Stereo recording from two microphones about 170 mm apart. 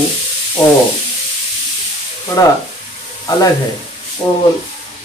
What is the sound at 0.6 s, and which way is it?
Speech, 25° left (ahead or behind).